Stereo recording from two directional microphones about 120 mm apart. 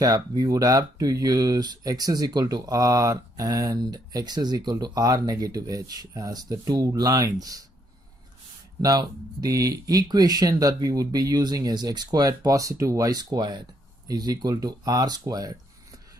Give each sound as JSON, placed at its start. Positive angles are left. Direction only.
{"t": 0.0, "sound": "speech", "side_deg": -35}
{"t": 8.8, "sound": "speech", "side_deg": -30}